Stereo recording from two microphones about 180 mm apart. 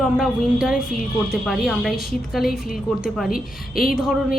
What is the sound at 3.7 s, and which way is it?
Speech, 55° left (ahead or behind).